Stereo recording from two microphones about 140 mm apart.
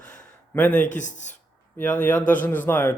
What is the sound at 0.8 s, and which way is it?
Speech, 60° left (ahead or behind).